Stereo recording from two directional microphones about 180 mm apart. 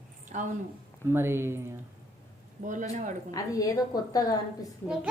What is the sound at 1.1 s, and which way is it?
Speech, 15° right (ahead or behind).